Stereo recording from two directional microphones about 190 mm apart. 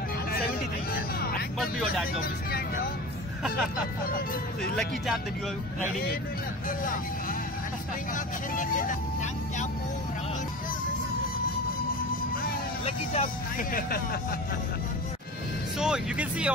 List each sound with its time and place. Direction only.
1.6 s speech: centre (ahead or behind)
4.7 s speech: centre (ahead or behind)
8.5 s music: 45° left (ahead or behind)
12.8 s speech: 35° left (ahead or behind)
15.8 s speech: 5° right (ahead or behind)